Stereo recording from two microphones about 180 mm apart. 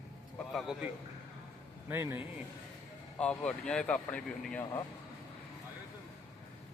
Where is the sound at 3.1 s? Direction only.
5° left (ahead or behind).